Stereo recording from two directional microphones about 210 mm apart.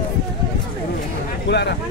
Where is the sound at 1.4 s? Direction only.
55° left (ahead or behind).